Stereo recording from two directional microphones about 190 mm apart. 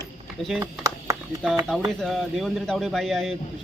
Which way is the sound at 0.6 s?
15° right (ahead or behind).